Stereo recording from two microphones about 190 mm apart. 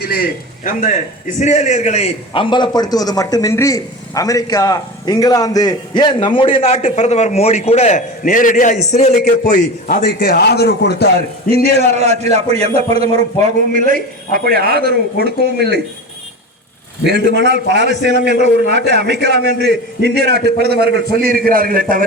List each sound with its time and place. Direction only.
0.0 s a man's voice: 50° left (ahead or behind)
11.9 s a man's voice: 35° right (ahead or behind); by 15.8 s 60° right (ahead or behind)
17.1 s a man's voice: 65° right (ahead or behind); by 22.0 s 50° right (ahead or behind)